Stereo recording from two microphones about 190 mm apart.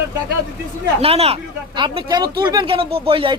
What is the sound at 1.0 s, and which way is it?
Speech, 30° right (ahead or behind).